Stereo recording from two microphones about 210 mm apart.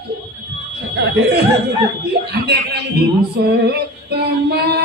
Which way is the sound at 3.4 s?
50° right (ahead or behind).